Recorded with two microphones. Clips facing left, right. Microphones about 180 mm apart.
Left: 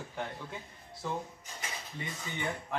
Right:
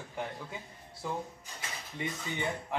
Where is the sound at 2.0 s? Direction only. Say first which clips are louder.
Right 6 dB; 15° right (ahead or behind).